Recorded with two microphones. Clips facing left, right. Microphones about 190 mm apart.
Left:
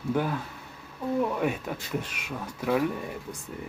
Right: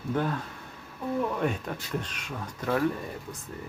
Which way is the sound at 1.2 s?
5° left (ahead or behind).